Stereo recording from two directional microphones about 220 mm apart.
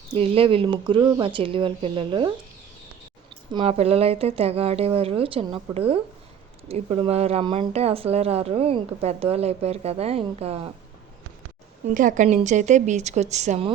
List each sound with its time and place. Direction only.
0.1 s speech: 25° right (ahead or behind)
3.5 s speech: 25° right (ahead or behind)
11.9 s speech: 35° right (ahead or behind)